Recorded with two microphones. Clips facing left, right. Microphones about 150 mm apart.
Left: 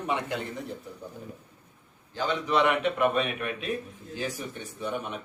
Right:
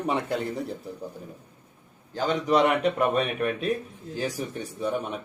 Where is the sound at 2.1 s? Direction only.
40° right (ahead or behind).